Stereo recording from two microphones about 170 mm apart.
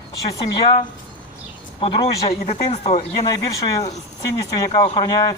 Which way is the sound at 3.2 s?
20° left (ahead or behind).